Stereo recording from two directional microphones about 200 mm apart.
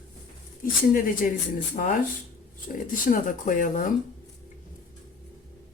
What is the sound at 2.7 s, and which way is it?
Speech, 45° left (ahead or behind).